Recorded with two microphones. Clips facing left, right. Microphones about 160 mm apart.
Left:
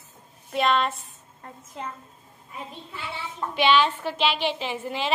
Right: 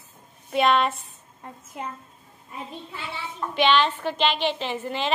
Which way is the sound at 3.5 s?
10° left (ahead or behind).